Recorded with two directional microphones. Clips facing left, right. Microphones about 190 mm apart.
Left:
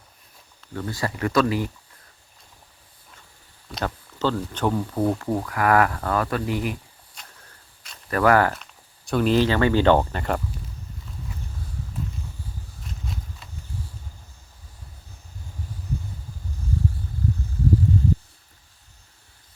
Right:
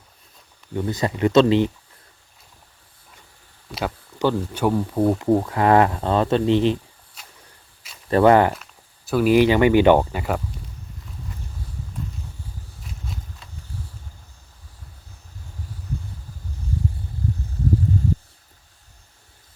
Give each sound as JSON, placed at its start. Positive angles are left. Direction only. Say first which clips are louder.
{"t": 0.7, "sound": "speech", "louder": "right 5 dB", "side_deg": -20}
{"t": 3.7, "sound": "speech", "louder": "right 2 dB", "side_deg": -5}
{"t": 7.2, "sound": "a sound", "louder": "even", "side_deg": -5}
{"t": 8.1, "sound": "speech", "louder": "right 4 dB", "side_deg": -25}
{"t": 9.0, "sound": "speech", "louder": "right 4 dB", "side_deg": -5}
{"t": 12.8, "sound": "a sound", "louder": "left 1 dB", "side_deg": 0}